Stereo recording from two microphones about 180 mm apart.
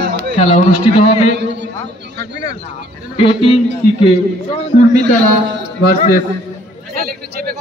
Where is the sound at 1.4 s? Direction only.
75° right (ahead or behind).